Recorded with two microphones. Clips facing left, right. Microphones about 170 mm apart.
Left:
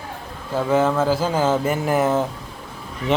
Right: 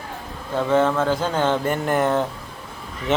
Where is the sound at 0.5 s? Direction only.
5° left (ahead or behind).